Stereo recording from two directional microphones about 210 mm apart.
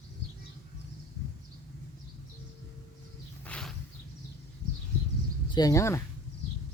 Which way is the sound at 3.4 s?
5° left (ahead or behind).